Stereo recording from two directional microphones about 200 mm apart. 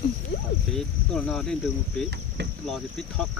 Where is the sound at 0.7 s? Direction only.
5° left (ahead or behind).